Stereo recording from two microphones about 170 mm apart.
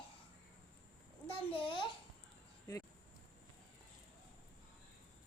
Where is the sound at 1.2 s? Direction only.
30° left (ahead or behind).